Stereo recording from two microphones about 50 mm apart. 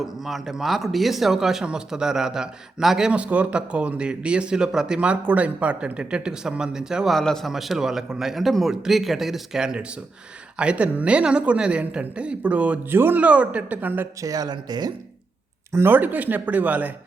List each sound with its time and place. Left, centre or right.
0.0 s a man's voice: centre
3.1 s speech: right
4.9 s speech: right
7.1 s a man's voice: centre
7.4 s a man's voice: centre; by 12.8 s right
12.9 s speech: right
13.1 s speech: right
15.8 s speech: right